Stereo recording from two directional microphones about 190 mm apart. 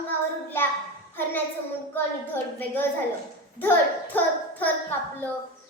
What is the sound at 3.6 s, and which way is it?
Child singing, 10° left (ahead or behind).